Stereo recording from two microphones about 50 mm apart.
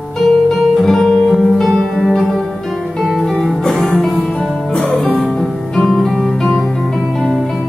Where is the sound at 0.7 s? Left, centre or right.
Centre.